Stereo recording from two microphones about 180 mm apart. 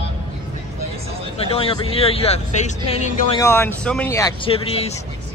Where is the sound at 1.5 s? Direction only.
30° left (ahead or behind).